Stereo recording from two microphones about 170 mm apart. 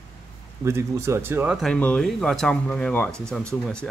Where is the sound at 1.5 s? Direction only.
5° left (ahead or behind).